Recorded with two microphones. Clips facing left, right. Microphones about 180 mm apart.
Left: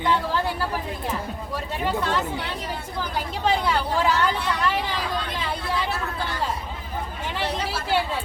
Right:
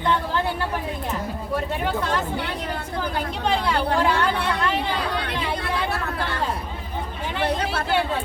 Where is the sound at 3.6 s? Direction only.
60° right (ahead or behind).